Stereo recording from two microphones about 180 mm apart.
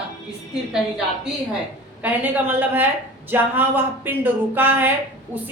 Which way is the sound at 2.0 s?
10° right (ahead or behind).